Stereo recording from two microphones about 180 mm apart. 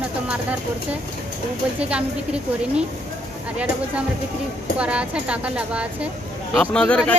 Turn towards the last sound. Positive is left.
turn(degrees=5)  # may be behind; listen again after turning